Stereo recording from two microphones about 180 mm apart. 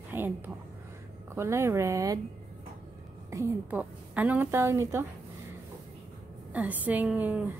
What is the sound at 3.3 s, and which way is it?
A woman's voice, 15° right (ahead or behind).